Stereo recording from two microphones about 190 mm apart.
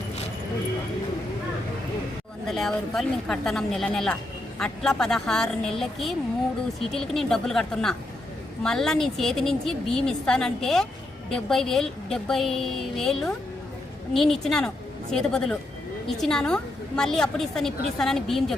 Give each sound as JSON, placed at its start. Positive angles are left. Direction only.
{"t": 2.5, "sound": "a woman's voice", "side_deg": 0}